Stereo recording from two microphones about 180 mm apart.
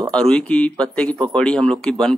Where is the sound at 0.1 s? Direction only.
5° left (ahead or behind).